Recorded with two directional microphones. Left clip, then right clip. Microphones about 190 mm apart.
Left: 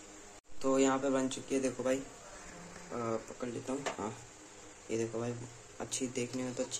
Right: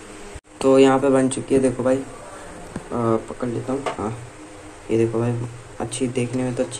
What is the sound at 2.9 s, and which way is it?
Speech, 5° left (ahead or behind).